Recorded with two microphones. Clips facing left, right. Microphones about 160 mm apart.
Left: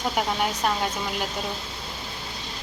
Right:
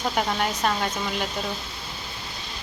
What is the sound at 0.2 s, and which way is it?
Speech, 5° left (ahead or behind).